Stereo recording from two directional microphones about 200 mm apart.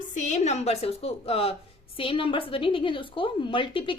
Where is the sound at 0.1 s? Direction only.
40° left (ahead or behind).